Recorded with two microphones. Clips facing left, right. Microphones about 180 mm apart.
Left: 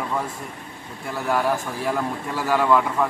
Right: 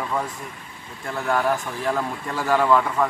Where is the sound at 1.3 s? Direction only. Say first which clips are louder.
Even; 5° left (ahead or behind).